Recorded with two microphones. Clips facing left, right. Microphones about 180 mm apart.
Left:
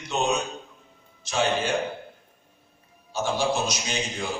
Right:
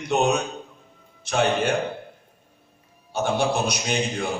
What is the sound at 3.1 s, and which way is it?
A man's voice, 60° right (ahead or behind).